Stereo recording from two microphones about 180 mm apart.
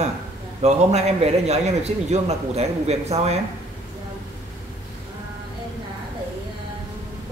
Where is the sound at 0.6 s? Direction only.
35° right (ahead or behind).